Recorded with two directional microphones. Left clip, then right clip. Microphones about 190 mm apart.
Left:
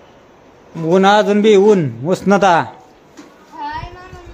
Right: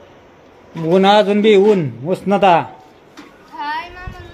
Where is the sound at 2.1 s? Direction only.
20° left (ahead or behind).